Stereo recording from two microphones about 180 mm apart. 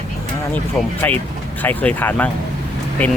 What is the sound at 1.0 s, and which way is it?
Speech, 10° left (ahead or behind).